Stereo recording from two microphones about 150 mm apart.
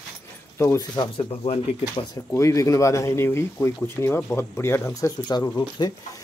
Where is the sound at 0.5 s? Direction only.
20° left (ahead or behind).